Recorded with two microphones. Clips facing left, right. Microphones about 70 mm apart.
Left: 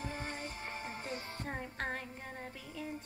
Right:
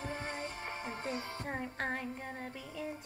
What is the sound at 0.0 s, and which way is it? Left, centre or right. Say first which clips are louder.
Music: right 2 dB; right.